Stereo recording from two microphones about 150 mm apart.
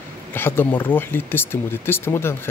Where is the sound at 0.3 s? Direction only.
15° left (ahead or behind).